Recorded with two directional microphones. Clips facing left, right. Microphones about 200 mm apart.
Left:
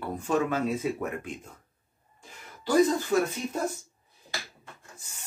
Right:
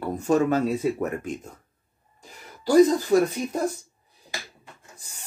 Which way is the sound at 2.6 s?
35° right (ahead or behind).